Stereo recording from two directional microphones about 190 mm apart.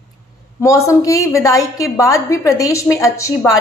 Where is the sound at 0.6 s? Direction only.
15° left (ahead or behind).